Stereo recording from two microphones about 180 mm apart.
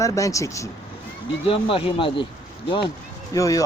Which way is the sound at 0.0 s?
20° left (ahead or behind).